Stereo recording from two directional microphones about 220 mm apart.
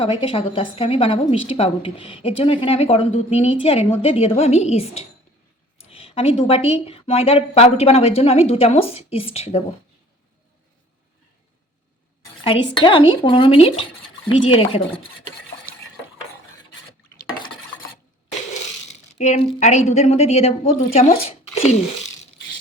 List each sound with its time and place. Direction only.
0.0 s a woman's voice: 25° left (ahead or behind)
12.7 s a woman's voice: 20° left (ahead or behind)
19.2 s a woman's voice: 30° left (ahead or behind)